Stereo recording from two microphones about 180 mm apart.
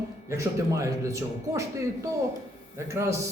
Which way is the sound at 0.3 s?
15° right (ahead or behind).